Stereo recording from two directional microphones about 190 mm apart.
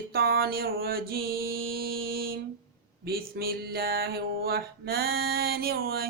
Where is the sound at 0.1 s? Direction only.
55° right (ahead or behind).